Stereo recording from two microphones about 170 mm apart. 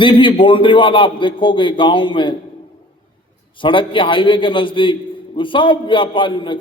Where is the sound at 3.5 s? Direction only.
30° left (ahead or behind).